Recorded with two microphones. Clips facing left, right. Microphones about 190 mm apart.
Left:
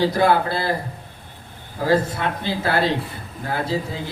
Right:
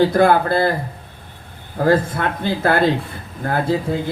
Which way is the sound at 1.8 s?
55° right (ahead or behind).